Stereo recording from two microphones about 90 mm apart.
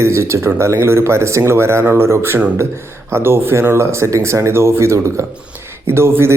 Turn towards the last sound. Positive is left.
turn(degrees=-25)  # may be behind; listen again after turning